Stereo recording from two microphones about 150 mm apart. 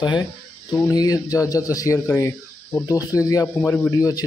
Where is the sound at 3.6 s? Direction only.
10° left (ahead or behind).